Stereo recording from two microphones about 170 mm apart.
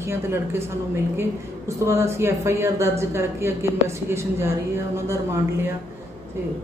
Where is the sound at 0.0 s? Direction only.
15° right (ahead or behind).